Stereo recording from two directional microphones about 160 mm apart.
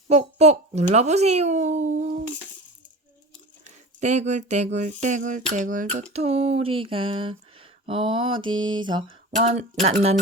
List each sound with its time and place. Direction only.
0.1 s speech: 45° right (ahead or behind)
3.6 s speech: 45° right (ahead or behind)
7.9 s mantra: 35° right (ahead or behind)
9.3 s speech: 45° right (ahead or behind)